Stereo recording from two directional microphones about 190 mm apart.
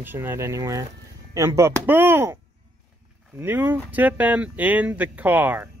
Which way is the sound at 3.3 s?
10° right (ahead or behind).